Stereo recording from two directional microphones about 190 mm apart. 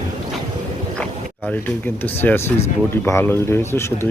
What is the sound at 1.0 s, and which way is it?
Speech, 10° left (ahead or behind).